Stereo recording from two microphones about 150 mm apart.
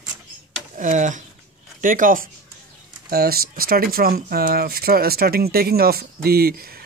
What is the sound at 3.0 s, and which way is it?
Speech, 90° right.